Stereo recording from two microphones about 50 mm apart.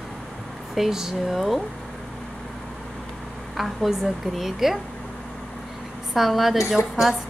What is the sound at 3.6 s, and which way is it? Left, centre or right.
A woman's voice, centre.